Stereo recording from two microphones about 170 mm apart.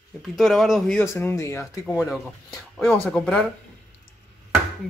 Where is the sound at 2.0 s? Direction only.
Centre (ahead or behind).